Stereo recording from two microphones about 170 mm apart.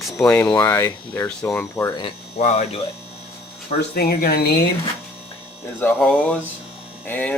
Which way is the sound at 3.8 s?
65° left (ahead or behind).